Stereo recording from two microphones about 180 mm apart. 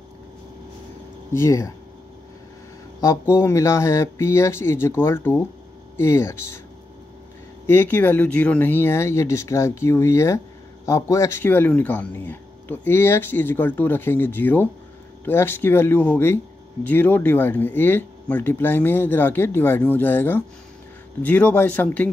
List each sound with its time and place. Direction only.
1.3 s speech: 15° left (ahead or behind)
3.0 s speech: 15° left (ahead or behind)
7.6 s speech: 15° left (ahead or behind)